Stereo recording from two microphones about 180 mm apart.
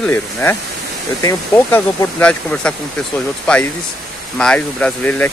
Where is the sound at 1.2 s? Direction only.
20° left (ahead or behind).